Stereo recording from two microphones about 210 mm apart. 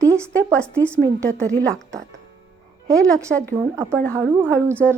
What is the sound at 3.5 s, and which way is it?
Speech, 10° right (ahead or behind).